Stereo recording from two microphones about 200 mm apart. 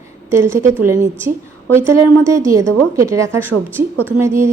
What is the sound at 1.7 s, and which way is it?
A woman's voice, 10° right (ahead or behind).